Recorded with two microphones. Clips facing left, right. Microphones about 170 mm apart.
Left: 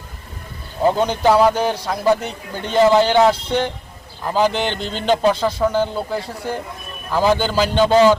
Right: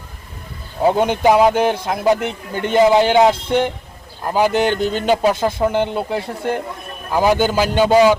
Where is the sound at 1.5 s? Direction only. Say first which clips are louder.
Right 3 dB; 55° right (ahead or behind).